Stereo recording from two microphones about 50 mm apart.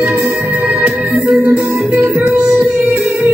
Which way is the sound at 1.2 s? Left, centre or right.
Right.